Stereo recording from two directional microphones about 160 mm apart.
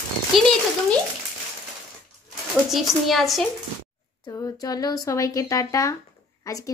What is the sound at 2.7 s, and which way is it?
Speech, centre (ahead or behind).